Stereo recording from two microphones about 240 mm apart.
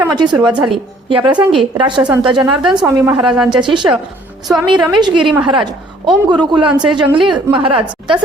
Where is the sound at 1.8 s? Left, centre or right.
Centre.